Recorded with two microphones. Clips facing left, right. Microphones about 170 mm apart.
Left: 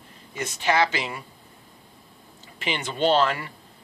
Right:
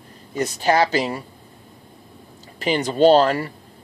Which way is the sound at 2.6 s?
40° right (ahead or behind).